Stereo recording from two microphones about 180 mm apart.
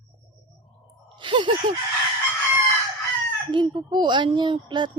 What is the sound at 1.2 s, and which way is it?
Speech, 25° right (ahead or behind).